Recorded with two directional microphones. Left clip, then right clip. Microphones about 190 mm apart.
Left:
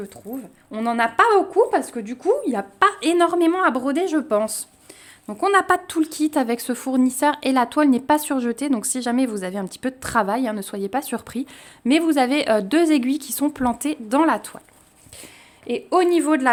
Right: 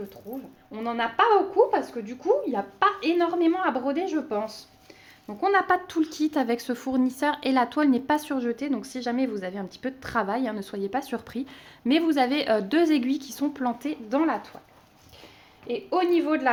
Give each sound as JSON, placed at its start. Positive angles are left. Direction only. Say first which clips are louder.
{"t": 0.7, "sound": "a woman's voice", "louder": "left 7 dB", "side_deg": 70}
{"t": 5.2, "sound": "speech", "louder": "left 5 dB", "side_deg": 50}
{"t": 6.0, "sound": "speech", "louder": "left 4 dB", "side_deg": 25}
{"t": 15.6, "sound": "a woman's voice", "louder": "left 6 dB", "side_deg": 70}